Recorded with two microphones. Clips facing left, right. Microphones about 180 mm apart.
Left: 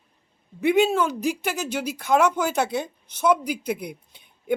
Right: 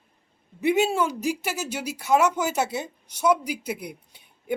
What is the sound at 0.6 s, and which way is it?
Speech, 5° right (ahead or behind).